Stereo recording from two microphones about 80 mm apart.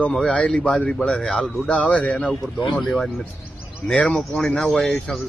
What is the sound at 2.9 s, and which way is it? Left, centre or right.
Speech, centre.